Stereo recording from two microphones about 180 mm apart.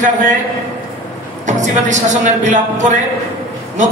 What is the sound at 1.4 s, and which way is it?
A man's voice, 45° right (ahead or behind).